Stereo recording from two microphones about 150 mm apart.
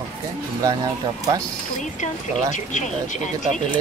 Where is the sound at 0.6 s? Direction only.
20° right (ahead or behind).